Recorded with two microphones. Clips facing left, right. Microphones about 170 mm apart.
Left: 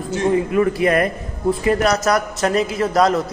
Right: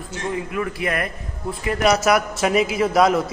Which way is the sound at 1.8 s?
5° right (ahead or behind).